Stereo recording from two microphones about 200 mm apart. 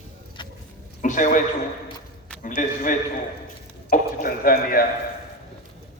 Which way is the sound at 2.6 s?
40° left (ahead or behind).